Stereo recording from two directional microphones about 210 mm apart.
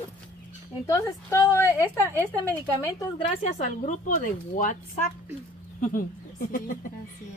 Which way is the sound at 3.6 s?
35° left (ahead or behind).